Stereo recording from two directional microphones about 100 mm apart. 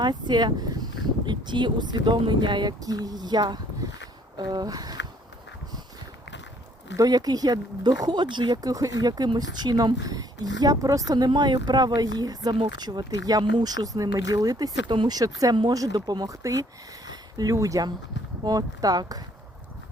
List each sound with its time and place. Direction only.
0.0 s speech: 45° right (ahead or behind)
6.9 s speech: 40° right (ahead or behind)